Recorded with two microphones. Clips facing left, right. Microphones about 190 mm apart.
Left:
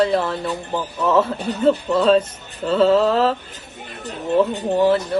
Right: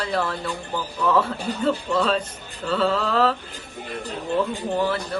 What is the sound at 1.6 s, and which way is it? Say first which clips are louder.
Speech: left 6 dB; 30° left (ahead or behind).